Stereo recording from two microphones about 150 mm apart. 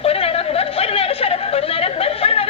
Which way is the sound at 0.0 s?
40° left (ahead or behind).